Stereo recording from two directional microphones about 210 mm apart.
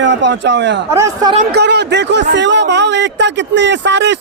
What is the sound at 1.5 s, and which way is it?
Speech, 55° right (ahead or behind).